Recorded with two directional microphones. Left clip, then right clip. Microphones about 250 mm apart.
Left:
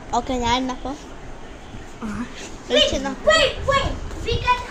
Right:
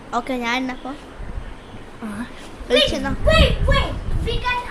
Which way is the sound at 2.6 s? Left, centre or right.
Centre.